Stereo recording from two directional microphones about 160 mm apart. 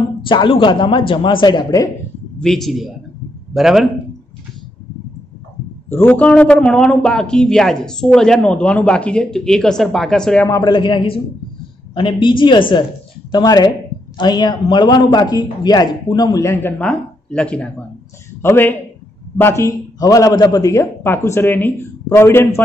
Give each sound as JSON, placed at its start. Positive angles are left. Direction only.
{"t": 0.2, "sound": "a man's voice", "side_deg": 30}
{"t": 2.4, "sound": "a man's voice", "side_deg": 0}
{"t": 5.9, "sound": "a man's voice", "side_deg": 15}
{"t": 10.4, "sound": "a man's voice", "side_deg": 25}